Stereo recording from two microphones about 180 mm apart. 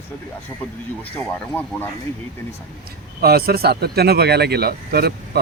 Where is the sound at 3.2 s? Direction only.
60° right (ahead or behind).